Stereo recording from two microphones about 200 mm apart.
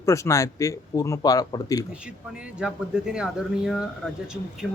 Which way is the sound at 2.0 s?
5° right (ahead or behind).